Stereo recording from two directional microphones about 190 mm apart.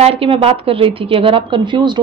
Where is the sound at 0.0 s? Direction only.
30° right (ahead or behind).